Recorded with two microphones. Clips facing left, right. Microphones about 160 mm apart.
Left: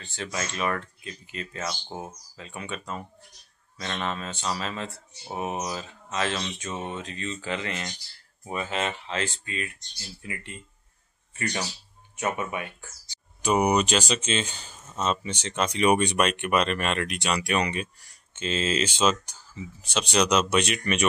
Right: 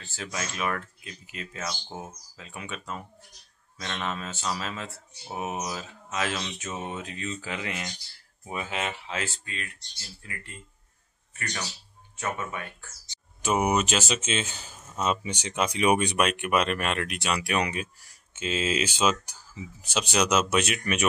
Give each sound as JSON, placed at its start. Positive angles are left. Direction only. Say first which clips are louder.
{"t": 0.0, "sound": "speech", "louder": "left 2 dB", "side_deg": -5}
{"t": 10.2, "sound": "speech", "louder": "left 5 dB", "side_deg": 20}
{"t": 12.2, "sound": "speech", "louder": "left 3 dB", "side_deg": 15}
{"t": 13.4, "sound": "speech", "louder": "left 2 dB", "side_deg": -5}